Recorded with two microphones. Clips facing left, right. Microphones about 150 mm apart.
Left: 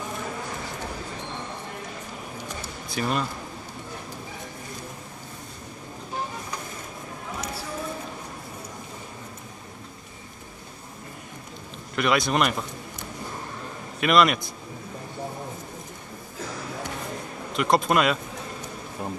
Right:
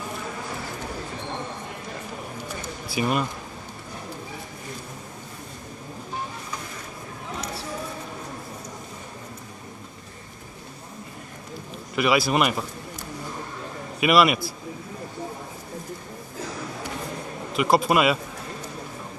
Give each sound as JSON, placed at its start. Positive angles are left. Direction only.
{"t": 2.4, "sound": "a sound", "side_deg": -5}
{"t": 11.9, "sound": "a man's voice", "side_deg": -5}
{"t": 13.9, "sound": "a man's voice", "side_deg": -5}
{"t": 17.5, "sound": "a man's voice", "side_deg": -5}